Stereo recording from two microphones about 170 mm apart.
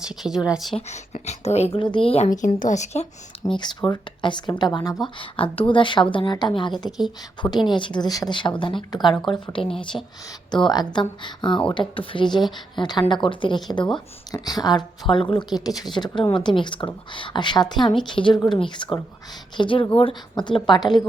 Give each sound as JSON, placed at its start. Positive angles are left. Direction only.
{"t": 0.2, "sound": "speech", "side_deg": -5}
{"t": 0.8, "sound": "a woman's voice", "side_deg": 40}
{"t": 3.4, "sound": "a woman's voice", "side_deg": 25}
{"t": 9.9, "sound": "a woman's voice", "side_deg": 20}